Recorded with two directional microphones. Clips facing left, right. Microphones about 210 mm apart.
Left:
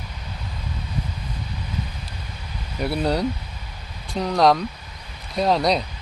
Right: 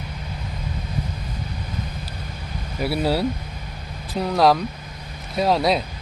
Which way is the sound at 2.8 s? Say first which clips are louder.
Right 1 dB; 5° right (ahead or behind).